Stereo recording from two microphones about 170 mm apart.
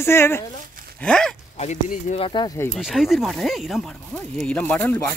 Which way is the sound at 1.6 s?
45° left (ahead or behind).